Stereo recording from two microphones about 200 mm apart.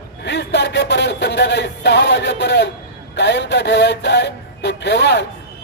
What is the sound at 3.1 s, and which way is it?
Speech, 60° left (ahead or behind).